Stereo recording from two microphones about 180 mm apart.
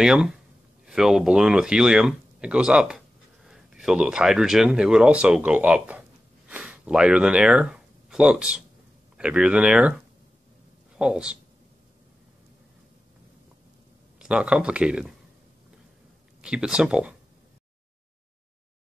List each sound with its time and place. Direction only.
0.0 s speech: 5° right (ahead or behind)
14.1 s speech: 5° right (ahead or behind)
16.3 s speech: 5° right (ahead or behind)